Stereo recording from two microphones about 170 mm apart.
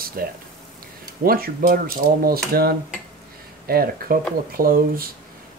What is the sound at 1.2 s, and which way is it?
Speech, 60° right (ahead or behind).